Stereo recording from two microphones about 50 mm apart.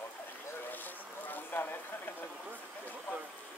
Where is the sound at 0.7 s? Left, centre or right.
Left.